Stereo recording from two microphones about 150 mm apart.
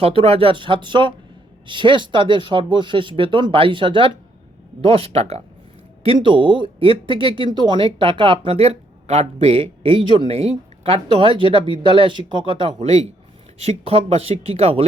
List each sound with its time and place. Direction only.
0.0 s speech: 40° right (ahead or behind)
6.1 s speech: 35° right (ahead or behind)